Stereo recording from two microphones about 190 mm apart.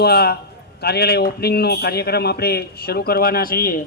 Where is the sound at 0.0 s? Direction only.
55° left (ahead or behind).